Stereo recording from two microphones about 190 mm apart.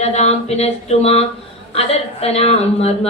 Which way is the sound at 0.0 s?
35° left (ahead or behind).